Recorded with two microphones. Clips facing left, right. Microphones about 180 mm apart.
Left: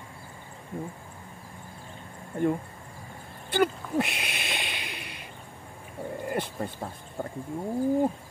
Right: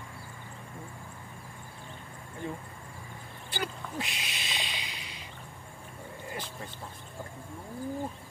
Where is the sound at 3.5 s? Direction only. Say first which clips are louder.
Left 12 dB; 60° left (ahead or behind).